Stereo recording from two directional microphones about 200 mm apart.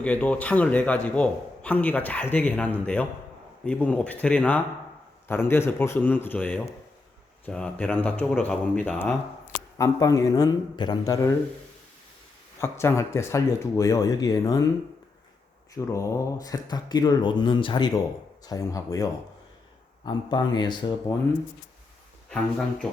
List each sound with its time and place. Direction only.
0.0 s a man's voice: 5° left (ahead or behind)
12.5 s a man's voice: 15° left (ahead or behind)
15.7 s a man's voice: 15° left (ahead or behind)
20.1 s speech: 20° left (ahead or behind)
22.3 s speech: 5° left (ahead or behind)